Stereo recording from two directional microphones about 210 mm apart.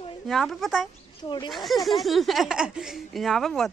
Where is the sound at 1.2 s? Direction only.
20° left (ahead or behind).